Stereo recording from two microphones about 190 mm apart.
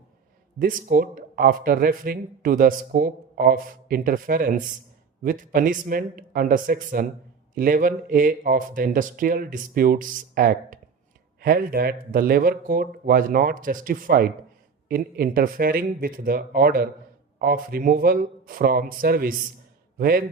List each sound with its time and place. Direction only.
0.6 s speech: 45° right (ahead or behind)